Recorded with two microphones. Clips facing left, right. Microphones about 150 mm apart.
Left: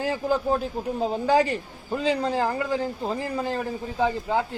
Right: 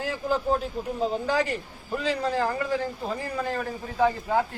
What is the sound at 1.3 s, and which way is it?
Speech, 30° left (ahead or behind).